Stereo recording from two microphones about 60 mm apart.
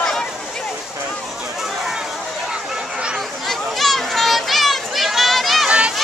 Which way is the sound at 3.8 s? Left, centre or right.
Centre.